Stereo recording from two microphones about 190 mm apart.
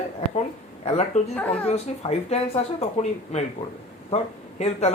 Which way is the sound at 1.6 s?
35° left (ahead or behind).